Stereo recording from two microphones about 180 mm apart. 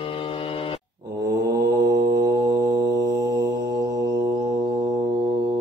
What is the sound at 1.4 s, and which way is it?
Mantra, 60° right (ahead or behind).